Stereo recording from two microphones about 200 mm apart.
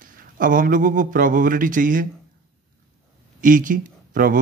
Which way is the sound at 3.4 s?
40° right (ahead or behind).